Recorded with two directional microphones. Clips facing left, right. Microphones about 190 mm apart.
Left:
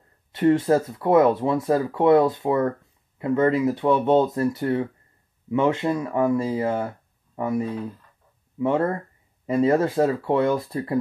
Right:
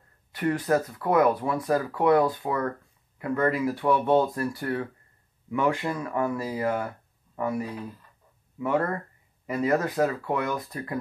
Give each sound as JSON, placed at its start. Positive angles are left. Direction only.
{"t": 0.3, "sound": "speech", "side_deg": 25}